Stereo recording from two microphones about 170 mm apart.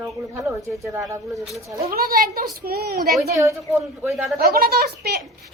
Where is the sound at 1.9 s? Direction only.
60° right (ahead or behind).